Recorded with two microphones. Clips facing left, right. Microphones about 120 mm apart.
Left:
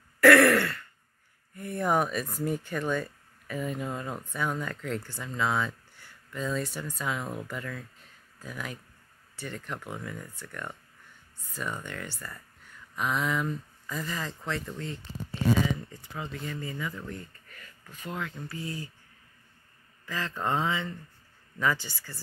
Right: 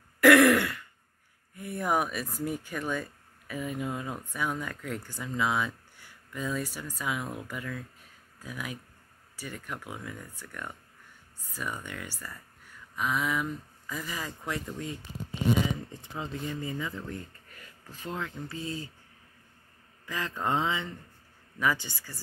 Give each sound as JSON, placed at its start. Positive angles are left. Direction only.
{"t": 0.2, "sound": "throat clearing", "side_deg": -15}
{"t": 1.5, "sound": "a sound", "side_deg": -10}
{"t": 2.4, "sound": "speech", "side_deg": -5}
{"t": 18.0, "sound": "speech", "side_deg": -20}
{"t": 20.1, "sound": "speech", "side_deg": -15}